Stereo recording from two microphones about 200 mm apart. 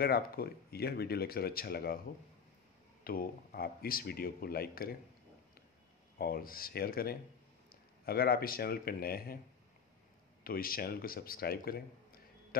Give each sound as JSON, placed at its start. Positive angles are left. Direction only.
{"t": 0.0, "sound": "speech", "side_deg": 50}
{"t": 3.0, "sound": "speech", "side_deg": 45}
{"t": 6.1, "sound": "speech", "side_deg": 50}
{"t": 10.4, "sound": "speech", "side_deg": 45}